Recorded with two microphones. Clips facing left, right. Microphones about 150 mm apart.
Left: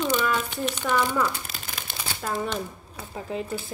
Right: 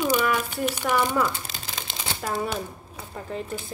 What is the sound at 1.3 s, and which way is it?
Crumpling, 25° right (ahead or behind).